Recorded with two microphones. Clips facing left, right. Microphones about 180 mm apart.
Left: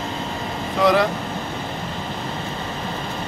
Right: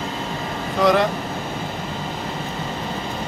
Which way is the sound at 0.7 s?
Centre (ahead or behind).